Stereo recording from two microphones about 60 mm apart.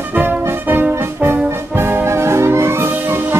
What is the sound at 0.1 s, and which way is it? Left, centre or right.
Music, right.